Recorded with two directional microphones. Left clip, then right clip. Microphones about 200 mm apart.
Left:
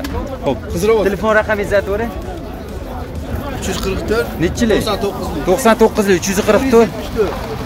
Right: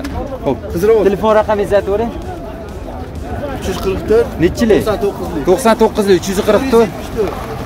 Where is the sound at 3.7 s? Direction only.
35° right (ahead or behind).